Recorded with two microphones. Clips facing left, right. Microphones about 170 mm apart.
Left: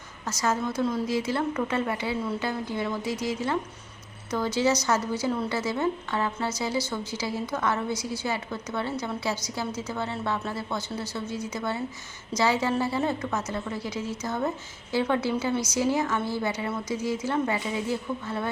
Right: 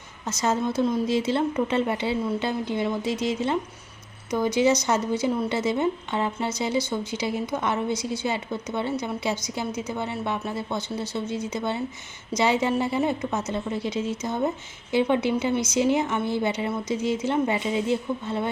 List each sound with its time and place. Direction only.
0.3 s a woman's voice: 25° right (ahead or behind)